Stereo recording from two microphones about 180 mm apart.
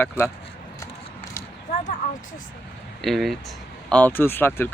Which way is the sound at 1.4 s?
15° left (ahead or behind).